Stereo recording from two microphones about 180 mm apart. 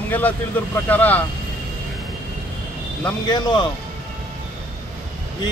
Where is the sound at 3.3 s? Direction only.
25° left (ahead or behind).